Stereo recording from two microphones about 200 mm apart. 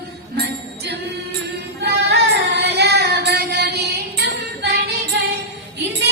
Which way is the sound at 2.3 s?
55° right (ahead or behind).